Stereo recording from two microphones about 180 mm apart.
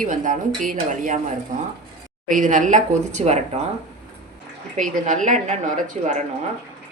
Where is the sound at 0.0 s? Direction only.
45° right (ahead or behind).